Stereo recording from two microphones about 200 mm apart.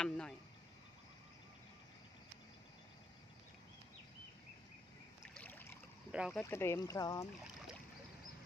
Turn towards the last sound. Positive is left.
turn(degrees=15)  # may be behind; listen again after turning